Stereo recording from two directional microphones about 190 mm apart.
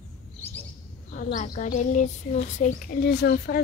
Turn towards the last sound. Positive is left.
turn(degrees=60)  # may be behind; listen again after turning